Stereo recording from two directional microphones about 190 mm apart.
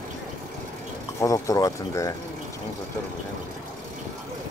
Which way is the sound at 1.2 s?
15° left (ahead or behind).